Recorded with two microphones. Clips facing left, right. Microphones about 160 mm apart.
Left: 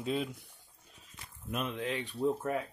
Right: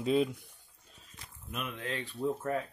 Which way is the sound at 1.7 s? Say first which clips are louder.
Left 3 dB; 15° left (ahead or behind).